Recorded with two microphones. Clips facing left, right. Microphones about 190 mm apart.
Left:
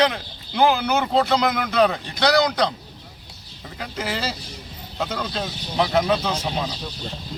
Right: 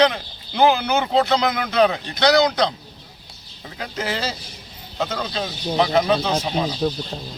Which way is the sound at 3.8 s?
5° left (ahead or behind).